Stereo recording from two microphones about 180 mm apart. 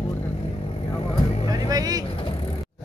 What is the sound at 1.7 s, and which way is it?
Vehicle, 20° right (ahead or behind).